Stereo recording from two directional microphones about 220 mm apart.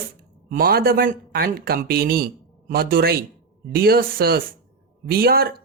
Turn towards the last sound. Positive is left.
turn(degrees=-45)  # may be behind; listen again after turning